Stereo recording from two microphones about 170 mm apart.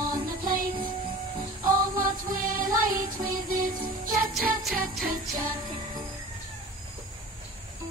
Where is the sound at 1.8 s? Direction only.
55° right (ahead or behind).